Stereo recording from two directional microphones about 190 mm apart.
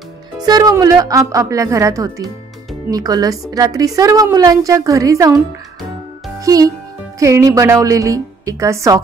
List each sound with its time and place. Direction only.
0.4 s a woman's voice: 20° right (ahead or behind)
6.4 s a child's voice: 20° right (ahead or behind)